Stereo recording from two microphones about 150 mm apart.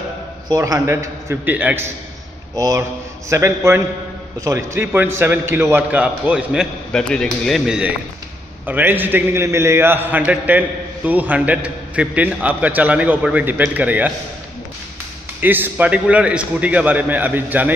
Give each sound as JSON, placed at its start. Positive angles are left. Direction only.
{"t": 0.5, "sound": "a man's voice", "side_deg": -25}
{"t": 2.5, "sound": "a man's voice", "side_deg": -20}
{"t": 15.4, "sound": "a man's voice", "side_deg": -10}